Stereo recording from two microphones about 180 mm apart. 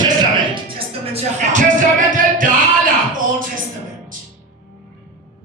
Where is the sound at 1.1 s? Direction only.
45° right (ahead or behind).